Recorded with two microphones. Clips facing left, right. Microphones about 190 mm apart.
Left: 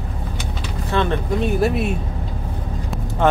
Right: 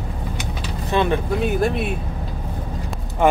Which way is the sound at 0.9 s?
10° right (ahead or behind).